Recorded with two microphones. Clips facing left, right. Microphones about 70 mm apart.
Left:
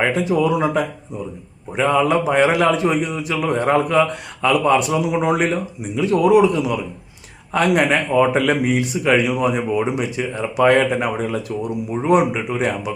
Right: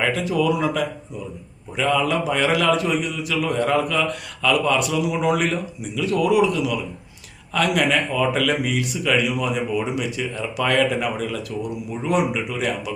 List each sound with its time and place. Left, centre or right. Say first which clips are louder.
0.0 s speech: left 3 dB; left